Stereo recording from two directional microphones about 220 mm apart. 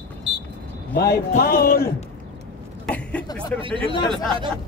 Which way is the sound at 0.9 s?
45° left (ahead or behind).